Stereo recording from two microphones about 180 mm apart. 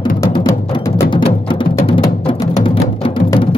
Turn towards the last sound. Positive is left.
turn(degrees=30)  # may be behind; listen again after turning